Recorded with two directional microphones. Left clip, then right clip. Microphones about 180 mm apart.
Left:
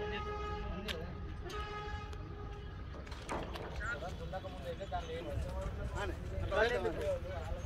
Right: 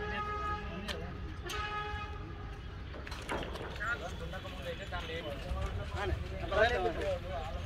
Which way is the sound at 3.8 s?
60° left (ahead or behind).